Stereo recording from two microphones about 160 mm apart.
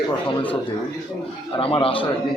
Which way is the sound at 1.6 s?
35° left (ahead or behind).